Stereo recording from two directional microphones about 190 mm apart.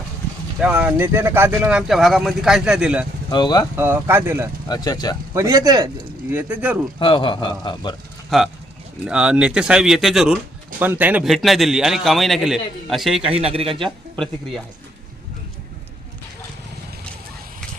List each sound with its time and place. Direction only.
0.6 s a man's voice: 5° right (ahead or behind)
3.2 s a man's voice: 25° left (ahead or behind)
3.8 s speech: 10° right (ahead or behind)
4.7 s a man's voice: 20° left (ahead or behind)
5.3 s speech: 15° right (ahead or behind)
6.3 s speech: 10° right (ahead or behind)
7.0 s a man's voice: 25° left (ahead or behind)
8.3 s a man's voice: centre (ahead or behind)
13.2 s speech: 30° right (ahead or behind)
13.8 s speech: 5° left (ahead or behind)